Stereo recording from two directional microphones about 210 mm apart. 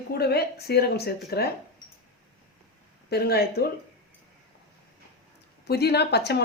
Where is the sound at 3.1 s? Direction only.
50° left (ahead or behind).